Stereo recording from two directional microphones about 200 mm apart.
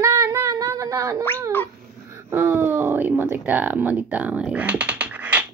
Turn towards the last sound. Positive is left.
turn(degrees=-5)  # may be behind; listen again after turning